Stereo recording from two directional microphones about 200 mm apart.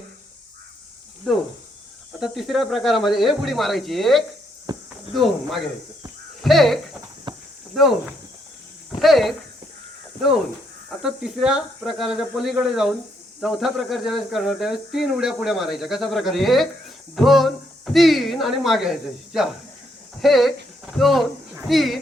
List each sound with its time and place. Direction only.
2.1 s speech: centre (ahead or behind)
4.7 s a sound: 20° right (ahead or behind)
5.1 s speech: centre (ahead or behind)
7.3 s cricket: 25° right (ahead or behind)
7.8 s speech: centre (ahead or behind)
11.0 s speech: 5° right (ahead or behind)